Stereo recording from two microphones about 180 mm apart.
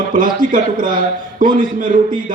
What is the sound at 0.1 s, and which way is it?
A man's voice, 50° right (ahead or behind).